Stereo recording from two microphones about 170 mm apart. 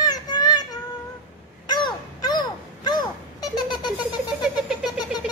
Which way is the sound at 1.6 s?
25° left (ahead or behind).